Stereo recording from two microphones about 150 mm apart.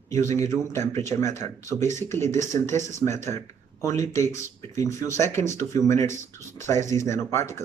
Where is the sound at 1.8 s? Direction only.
50° right (ahead or behind).